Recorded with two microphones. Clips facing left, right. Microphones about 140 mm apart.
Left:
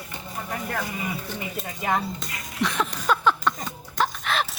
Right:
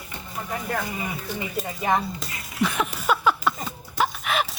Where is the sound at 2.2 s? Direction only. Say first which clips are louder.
Right 2 dB; 5° right (ahead or behind).